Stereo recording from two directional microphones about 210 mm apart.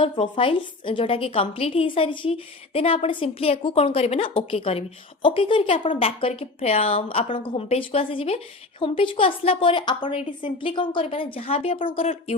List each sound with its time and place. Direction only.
0.0 s a woman's voice: 25° left (ahead or behind)